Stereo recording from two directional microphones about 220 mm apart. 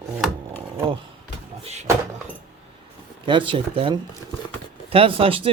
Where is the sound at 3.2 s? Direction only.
20° right (ahead or behind).